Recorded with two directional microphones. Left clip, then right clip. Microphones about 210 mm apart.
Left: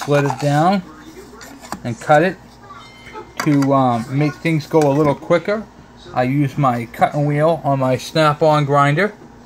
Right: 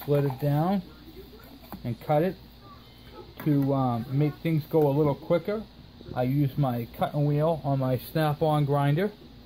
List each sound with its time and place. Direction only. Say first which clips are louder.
0.0 s speech: left 10 dB; 10° left (ahead or behind)
1.9 s speech: left 12 dB; 5° left (ahead or behind)
3.3 s speech: left 10 dB; 25° left (ahead or behind)
3.7 s speech: left 13 dB; 5° left (ahead or behind)